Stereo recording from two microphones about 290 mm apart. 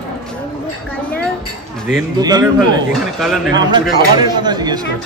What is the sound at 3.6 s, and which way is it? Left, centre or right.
A man's voice, centre.